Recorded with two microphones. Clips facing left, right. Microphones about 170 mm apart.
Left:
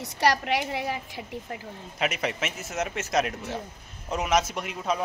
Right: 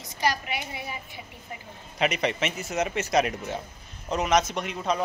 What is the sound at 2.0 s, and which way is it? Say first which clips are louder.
Speech: right 3 dB; 5° left (ahead or behind).